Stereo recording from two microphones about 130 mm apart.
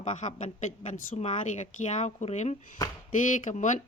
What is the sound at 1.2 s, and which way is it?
Speech, 60° left (ahead or behind).